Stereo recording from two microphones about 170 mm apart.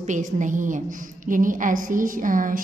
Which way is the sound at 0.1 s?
50° right (ahead or behind).